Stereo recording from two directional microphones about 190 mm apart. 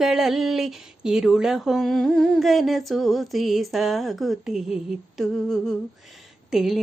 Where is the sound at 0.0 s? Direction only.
Centre (ahead or behind).